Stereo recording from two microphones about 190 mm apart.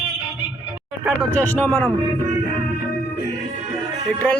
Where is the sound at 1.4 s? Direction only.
10° left (ahead or behind).